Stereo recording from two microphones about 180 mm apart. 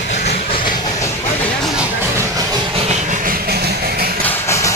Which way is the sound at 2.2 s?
20° right (ahead or behind).